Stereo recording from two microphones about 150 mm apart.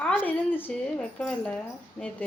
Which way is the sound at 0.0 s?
10° left (ahead or behind).